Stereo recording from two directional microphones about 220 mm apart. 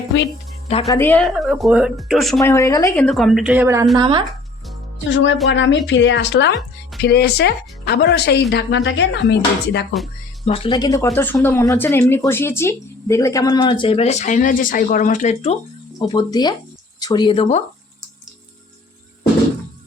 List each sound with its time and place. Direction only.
0.9 s speech: 10° left (ahead or behind)
2.4 s speech: 15° left (ahead or behind); by 3.8 s 10° right (ahead or behind)
3.9 s speech: 20° right (ahead or behind)
4.9 s speech: 55° left (ahead or behind)
10.4 s speech: 25° left (ahead or behind)